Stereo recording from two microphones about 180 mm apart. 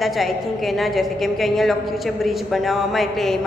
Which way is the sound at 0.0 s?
Centre (ahead or behind).